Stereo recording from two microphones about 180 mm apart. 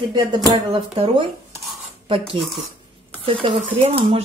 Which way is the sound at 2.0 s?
30° right (ahead or behind).